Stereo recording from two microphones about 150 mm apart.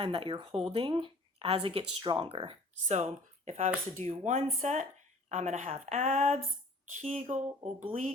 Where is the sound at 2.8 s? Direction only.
50° right (ahead or behind).